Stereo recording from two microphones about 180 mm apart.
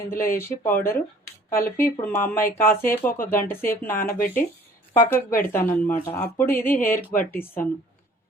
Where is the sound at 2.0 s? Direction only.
10° left (ahead or behind).